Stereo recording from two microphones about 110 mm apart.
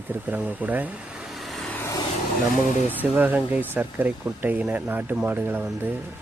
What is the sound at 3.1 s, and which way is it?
Speech, 15° right (ahead or behind).